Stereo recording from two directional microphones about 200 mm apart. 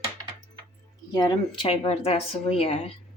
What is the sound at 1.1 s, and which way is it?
Speech, 20° left (ahead or behind).